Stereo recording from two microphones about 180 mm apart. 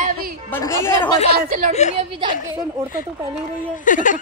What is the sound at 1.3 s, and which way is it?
Speech, 45° right (ahead or behind).